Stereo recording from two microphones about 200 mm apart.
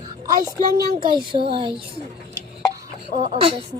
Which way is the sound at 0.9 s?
25° right (ahead or behind).